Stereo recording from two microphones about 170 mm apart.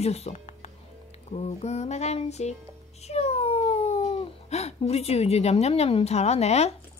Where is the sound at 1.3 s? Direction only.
40° left (ahead or behind).